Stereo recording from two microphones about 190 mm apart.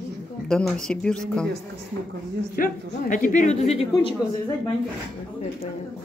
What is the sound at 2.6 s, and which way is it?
Speech, 45° left (ahead or behind).